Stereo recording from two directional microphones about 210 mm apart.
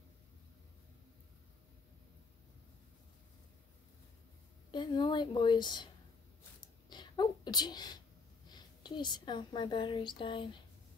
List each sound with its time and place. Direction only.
4.6 s a woman's voice: 20° left (ahead or behind)
6.9 s a sound: 20° left (ahead or behind)
8.5 s a woman's voice: 20° left (ahead or behind)